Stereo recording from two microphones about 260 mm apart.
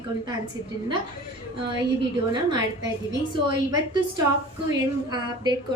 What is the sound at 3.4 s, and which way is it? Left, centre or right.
A woman's voice, centre.